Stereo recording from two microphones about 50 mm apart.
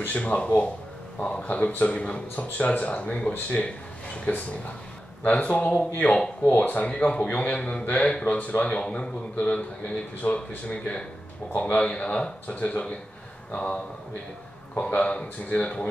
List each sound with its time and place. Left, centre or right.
0.1 s a man's voice: left
5.2 s a man's voice: left
11.8 s a man's voice: centre
14.9 s a man's voice: left